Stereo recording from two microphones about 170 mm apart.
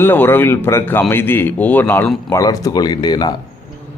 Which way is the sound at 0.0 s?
10° left (ahead or behind).